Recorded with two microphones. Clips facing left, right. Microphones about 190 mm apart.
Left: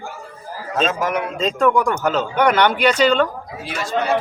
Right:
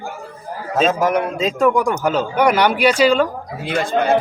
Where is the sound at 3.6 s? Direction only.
55° right (ahead or behind).